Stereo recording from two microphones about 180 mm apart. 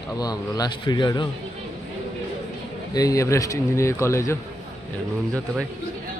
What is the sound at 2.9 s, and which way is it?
A man's voice, 20° left (ahead or behind).